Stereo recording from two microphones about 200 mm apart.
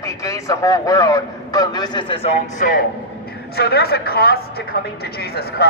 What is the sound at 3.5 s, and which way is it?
A man's voice, 55° left (ahead or behind).